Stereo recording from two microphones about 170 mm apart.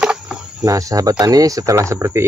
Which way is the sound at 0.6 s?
20° right (ahead or behind).